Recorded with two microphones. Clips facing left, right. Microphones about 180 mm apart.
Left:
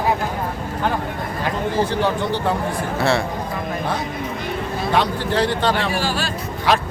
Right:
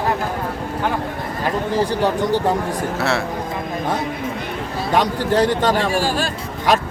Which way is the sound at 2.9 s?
Centre (ahead or behind).